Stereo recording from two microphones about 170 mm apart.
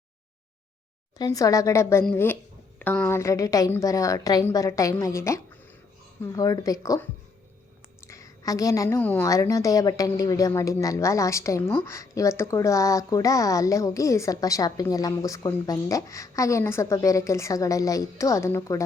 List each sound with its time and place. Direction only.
1.2 s a woman's voice: 20° left (ahead or behind)